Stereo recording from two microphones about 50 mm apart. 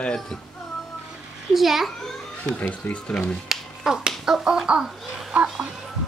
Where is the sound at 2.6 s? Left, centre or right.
Left.